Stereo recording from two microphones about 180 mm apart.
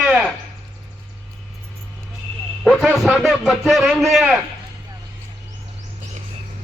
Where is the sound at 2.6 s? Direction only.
5° right (ahead or behind).